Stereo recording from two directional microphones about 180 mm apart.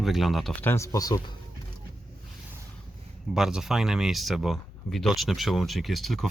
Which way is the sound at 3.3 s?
5° right (ahead or behind).